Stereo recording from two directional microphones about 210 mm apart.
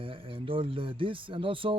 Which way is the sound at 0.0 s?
25° right (ahead or behind).